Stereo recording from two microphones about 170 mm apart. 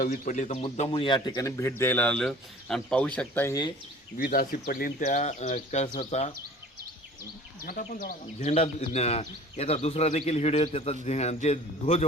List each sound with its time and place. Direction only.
0.0 s speech: 50° left (ahead or behind)
0.8 s speech: 30° left (ahead or behind); by 3.5 s 10° left (ahead or behind)
4.2 s speech: 60° left (ahead or behind); by 6.3 s 40° left (ahead or behind)
7.7 s speech: 55° left (ahead or behind); by 12.0 s 40° left (ahead or behind)